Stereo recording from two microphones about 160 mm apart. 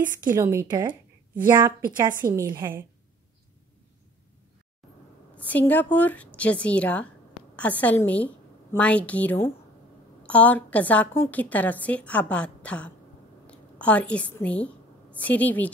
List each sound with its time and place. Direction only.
0.4 s a woman's voice: 20° right (ahead or behind)
5.3 s a woman's voice: 10° left (ahead or behind)